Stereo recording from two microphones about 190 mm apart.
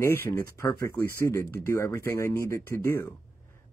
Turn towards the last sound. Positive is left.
turn(degrees=10)  # may be behind; listen again after turning